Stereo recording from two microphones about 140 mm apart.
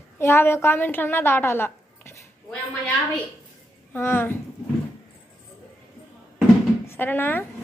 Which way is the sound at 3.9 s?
15° left (ahead or behind).